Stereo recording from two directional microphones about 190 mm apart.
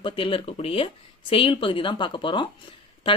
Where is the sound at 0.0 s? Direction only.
25° left (ahead or behind).